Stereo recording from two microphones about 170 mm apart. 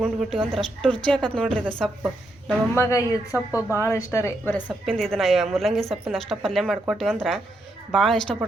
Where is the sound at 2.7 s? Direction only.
20° left (ahead or behind).